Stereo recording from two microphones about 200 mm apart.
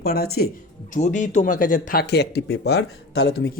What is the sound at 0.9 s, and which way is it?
Speech, 40° left (ahead or behind).